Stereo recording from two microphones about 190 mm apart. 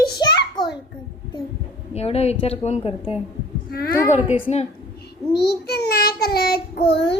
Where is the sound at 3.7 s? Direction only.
55° left (ahead or behind).